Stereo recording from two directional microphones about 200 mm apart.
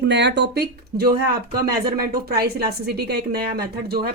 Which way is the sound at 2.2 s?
50° right (ahead or behind).